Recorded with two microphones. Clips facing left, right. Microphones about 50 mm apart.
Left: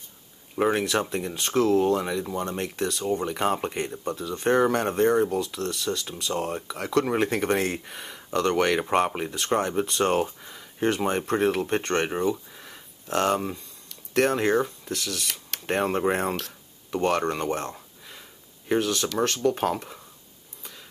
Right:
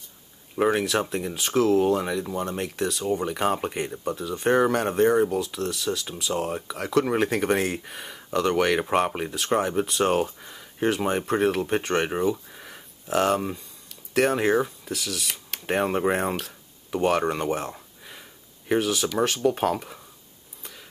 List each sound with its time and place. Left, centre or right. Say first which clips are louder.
0.6 s speech: right 1 dB; centre